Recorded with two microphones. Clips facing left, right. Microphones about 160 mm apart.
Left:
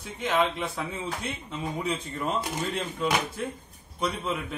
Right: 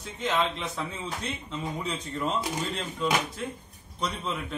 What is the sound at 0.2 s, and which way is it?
A man's voice, 10° left (ahead or behind).